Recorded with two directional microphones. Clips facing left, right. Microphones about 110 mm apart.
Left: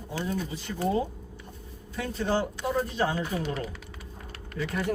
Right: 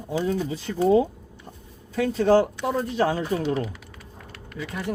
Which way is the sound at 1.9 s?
90° right.